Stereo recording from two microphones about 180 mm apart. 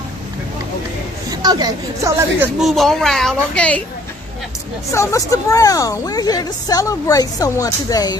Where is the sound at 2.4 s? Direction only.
Centre (ahead or behind).